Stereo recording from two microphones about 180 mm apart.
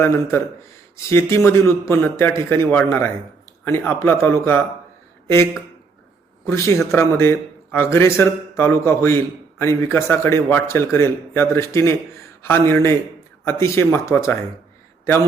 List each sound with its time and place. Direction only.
0.0 s a man's voice: 15° left (ahead or behind)
6.4 s a man's voice: 15° left (ahead or behind)